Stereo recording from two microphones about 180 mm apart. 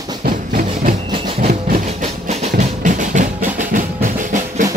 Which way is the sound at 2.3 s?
40° right (ahead or behind).